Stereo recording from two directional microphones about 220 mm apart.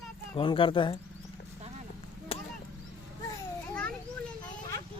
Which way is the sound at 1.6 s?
30° right (ahead or behind).